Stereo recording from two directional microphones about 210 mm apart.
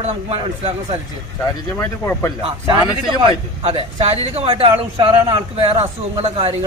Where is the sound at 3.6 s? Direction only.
25° right (ahead or behind).